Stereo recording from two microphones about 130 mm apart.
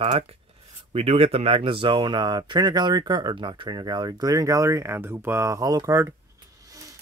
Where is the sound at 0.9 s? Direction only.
50° right (ahead or behind).